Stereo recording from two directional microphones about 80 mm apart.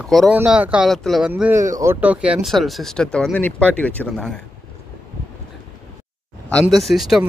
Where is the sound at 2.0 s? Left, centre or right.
Centre.